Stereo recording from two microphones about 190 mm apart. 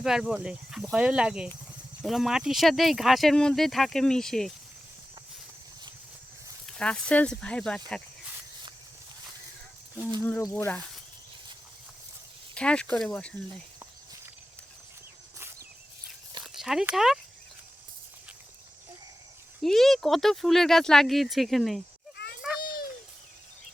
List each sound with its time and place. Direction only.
0.0 s speech: centre (ahead or behind)
6.7 s speech: 5° left (ahead or behind)
10.2 s speech: 10° left (ahead or behind)
12.5 s speech: 5° left (ahead or behind)
16.4 s speech: centre (ahead or behind)
19.6 s speech: centre (ahead or behind)
22.6 s a sound: 50° left (ahead or behind)